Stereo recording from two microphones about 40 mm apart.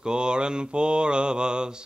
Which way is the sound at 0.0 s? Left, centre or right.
Right.